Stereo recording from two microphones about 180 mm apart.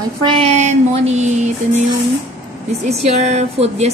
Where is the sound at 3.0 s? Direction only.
35° right (ahead or behind).